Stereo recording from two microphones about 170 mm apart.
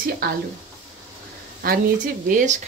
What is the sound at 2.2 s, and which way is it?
Speech, 45° right (ahead or behind).